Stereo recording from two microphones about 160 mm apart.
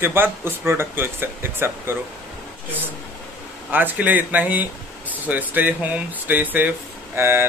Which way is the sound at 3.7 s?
10° right (ahead or behind).